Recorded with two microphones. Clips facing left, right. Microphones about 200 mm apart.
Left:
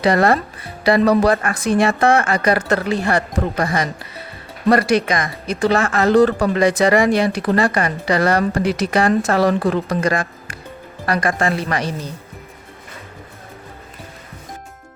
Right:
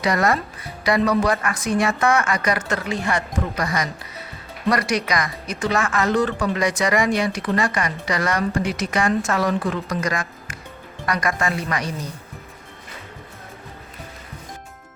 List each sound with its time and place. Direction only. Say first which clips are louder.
0.0 s speech: left 5 dB; 30° left (ahead or behind)